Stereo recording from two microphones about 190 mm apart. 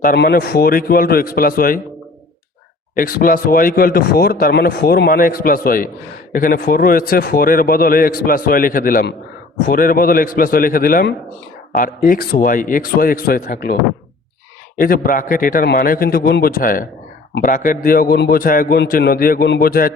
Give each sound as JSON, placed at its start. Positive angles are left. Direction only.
{"t": 0.0, "sound": "speech", "side_deg": 55}
{"t": 2.9, "sound": "speech", "side_deg": 50}
{"t": 14.8, "sound": "speech", "side_deg": 50}